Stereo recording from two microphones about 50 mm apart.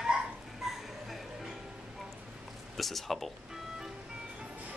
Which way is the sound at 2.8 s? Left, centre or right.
Centre.